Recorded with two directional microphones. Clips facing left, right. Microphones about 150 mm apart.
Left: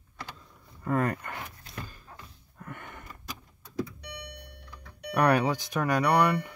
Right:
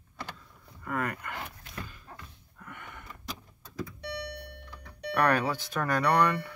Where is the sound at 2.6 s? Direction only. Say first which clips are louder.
Left 3 dB; 45° left (ahead or behind).